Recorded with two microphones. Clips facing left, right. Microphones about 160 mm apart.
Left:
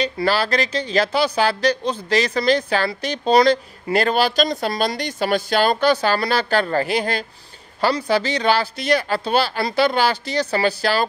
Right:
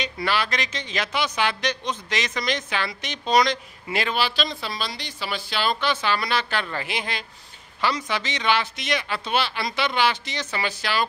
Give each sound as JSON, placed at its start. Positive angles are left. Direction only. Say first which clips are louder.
{"t": 0.0, "sound": "speech", "louder": "left 6 dB", "side_deg": 35}